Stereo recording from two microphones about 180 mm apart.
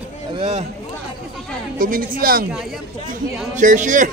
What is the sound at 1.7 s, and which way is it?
Speech, 50° right (ahead or behind).